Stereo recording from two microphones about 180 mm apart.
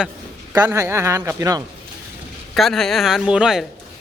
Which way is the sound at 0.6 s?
15° right (ahead or behind).